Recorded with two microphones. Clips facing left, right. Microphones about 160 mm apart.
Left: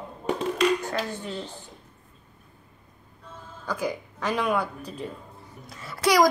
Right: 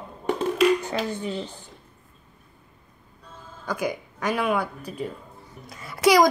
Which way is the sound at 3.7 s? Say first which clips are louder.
Right 2 dB; 10° right (ahead or behind).